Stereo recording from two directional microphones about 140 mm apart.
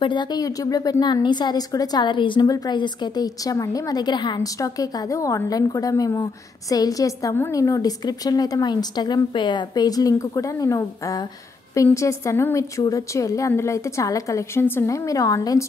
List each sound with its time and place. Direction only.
0.0 s speech: 35° left (ahead or behind)